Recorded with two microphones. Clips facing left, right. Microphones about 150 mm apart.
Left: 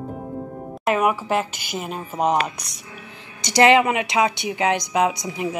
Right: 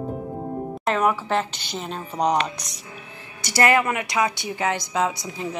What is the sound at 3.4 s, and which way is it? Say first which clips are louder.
A woman's voice: left 5 dB; 20° left (ahead or behind).